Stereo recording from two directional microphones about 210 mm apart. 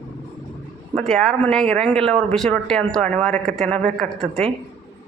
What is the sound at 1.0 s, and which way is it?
Speech, centre (ahead or behind).